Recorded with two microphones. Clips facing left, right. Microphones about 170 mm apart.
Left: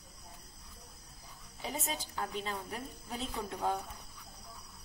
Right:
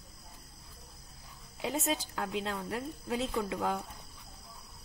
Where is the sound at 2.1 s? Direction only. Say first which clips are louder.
Right 3 dB; 90° right.